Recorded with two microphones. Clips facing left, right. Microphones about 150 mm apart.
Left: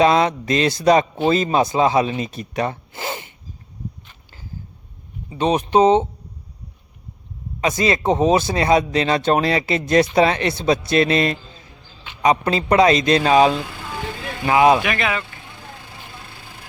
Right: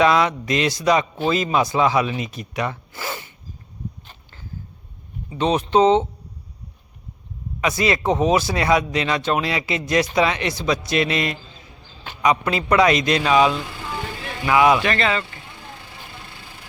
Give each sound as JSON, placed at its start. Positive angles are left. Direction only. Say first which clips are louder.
{"t": 0.0, "sound": "a man's voice", "louder": "left 2 dB", "side_deg": 30}
{"t": 1.6, "sound": "a man's voice", "louder": "left 2 dB", "side_deg": 25}
{"t": 2.9, "sound": "zipper", "louder": "left 2 dB", "side_deg": 20}
{"t": 5.4, "sound": "speech", "louder": "left 1 dB", "side_deg": 15}
{"t": 7.7, "sound": "speech", "louder": "left 1 dB", "side_deg": 40}
{"t": 7.9, "sound": "a man's voice", "louder": "left 2 dB", "side_deg": 25}
{"t": 14.8, "sound": "speech", "louder": "right 1 dB", "side_deg": 10}